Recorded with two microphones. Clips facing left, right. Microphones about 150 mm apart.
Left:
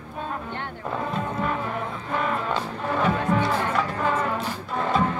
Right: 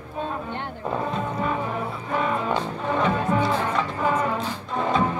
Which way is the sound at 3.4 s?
10° right (ahead or behind).